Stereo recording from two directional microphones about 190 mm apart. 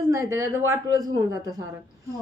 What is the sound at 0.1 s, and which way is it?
A woman's voice, 15° right (ahead or behind).